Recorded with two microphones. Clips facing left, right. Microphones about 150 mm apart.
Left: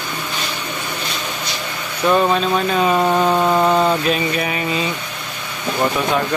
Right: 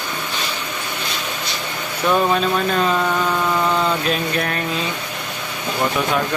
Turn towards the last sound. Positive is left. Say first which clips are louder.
# left 2 dB
turn(degrees=0)  # may be behind; listen again after turning